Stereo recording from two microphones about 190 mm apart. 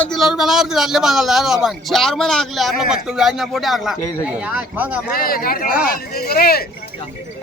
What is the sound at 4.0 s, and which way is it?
Speech, 15° left (ahead or behind).